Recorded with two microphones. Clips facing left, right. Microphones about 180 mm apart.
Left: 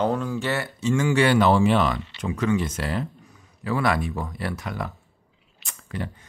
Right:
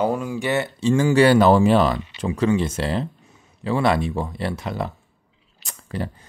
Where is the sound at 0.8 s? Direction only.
35° right (ahead or behind).